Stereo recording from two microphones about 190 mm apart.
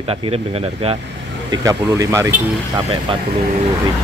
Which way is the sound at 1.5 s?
20° right (ahead or behind).